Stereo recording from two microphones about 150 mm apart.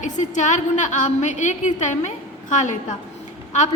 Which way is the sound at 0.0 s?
55° left (ahead or behind).